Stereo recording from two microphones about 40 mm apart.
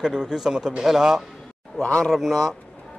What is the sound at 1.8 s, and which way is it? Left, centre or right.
Speech, left.